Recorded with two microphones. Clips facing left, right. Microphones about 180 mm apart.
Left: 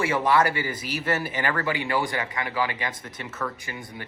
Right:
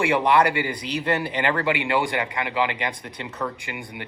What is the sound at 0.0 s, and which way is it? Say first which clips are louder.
A man's voice: right 3 dB; 20° right (ahead or behind).